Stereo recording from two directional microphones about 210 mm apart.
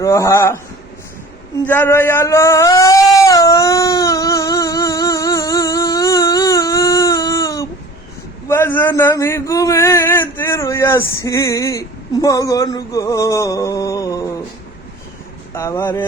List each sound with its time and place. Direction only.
0.0 s a man's voice: 15° left (ahead or behind)
1.6 s a sound: 10° left (ahead or behind)
8.4 s a man's voice: 10° left (ahead or behind)
15.5 s a man's voice: 15° left (ahead or behind)